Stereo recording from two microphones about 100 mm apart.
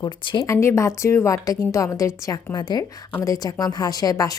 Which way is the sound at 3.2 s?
35° left (ahead or behind).